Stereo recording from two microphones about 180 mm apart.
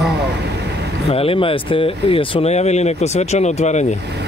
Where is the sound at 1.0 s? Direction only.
30° left (ahead or behind).